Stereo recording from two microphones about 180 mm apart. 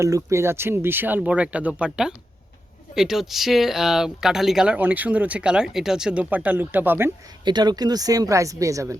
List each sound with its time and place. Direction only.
0.0 s speech: 15° right (ahead or behind)
7.4 s speech: 25° right (ahead or behind)